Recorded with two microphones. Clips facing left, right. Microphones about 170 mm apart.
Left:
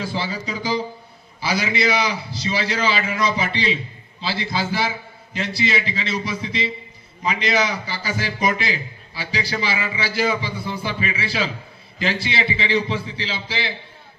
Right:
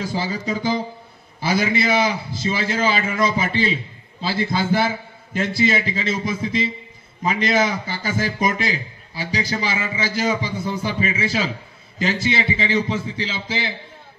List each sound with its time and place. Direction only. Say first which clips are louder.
0.0 s a man's voice: right 2 dB; 45° right (ahead or behind)